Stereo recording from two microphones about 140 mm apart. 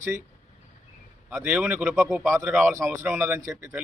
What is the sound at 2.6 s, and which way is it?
A man's voice, 20° right (ahead or behind).